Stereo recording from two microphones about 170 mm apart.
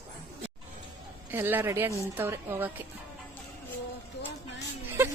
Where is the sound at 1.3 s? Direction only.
10° right (ahead or behind).